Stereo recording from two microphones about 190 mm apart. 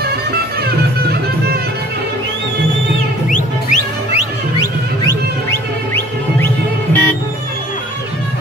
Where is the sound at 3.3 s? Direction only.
40° left (ahead or behind).